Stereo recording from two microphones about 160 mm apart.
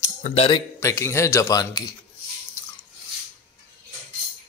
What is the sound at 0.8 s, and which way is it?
Speech, 15° left (ahead or behind).